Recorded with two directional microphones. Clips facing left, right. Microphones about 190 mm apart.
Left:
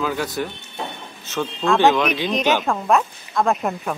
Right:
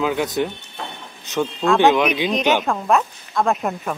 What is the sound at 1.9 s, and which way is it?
A woman's voice, centre (ahead or behind).